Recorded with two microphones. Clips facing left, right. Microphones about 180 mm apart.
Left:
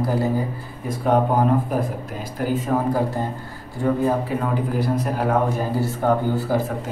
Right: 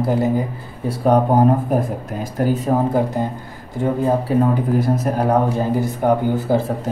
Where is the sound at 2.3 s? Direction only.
45° right (ahead or behind).